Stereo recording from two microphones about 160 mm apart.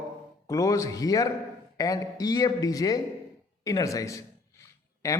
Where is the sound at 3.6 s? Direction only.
20° left (ahead or behind).